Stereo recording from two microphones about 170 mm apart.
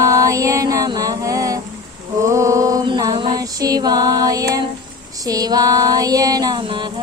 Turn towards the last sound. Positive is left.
turn(degrees=-30)  # may be behind; listen again after turning